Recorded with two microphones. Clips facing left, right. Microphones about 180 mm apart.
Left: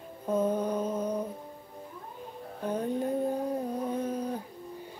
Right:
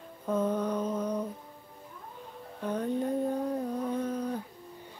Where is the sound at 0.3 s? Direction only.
30° left (ahead or behind).